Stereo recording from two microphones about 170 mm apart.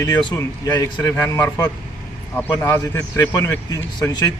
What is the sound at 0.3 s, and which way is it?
A man's voice, 20° left (ahead or behind).